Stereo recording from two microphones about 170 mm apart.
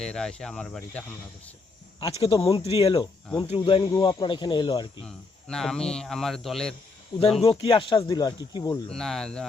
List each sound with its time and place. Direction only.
0.0 s speech: 5° left (ahead or behind)
2.0 s speech: 35° left (ahead or behind)
5.0 s speech: 5° left (ahead or behind)
7.1 s speech: 30° left (ahead or behind)
8.9 s speech: centre (ahead or behind)